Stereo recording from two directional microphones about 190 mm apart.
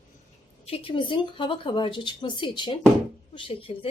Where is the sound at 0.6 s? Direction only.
25° left (ahead or behind).